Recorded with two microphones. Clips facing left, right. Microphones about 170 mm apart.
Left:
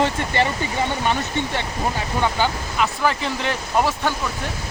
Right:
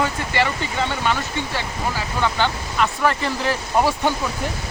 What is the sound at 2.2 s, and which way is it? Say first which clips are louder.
Speech: even; 5° left (ahead or behind).